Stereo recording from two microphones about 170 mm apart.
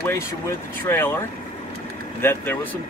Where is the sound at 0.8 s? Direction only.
15° left (ahead or behind).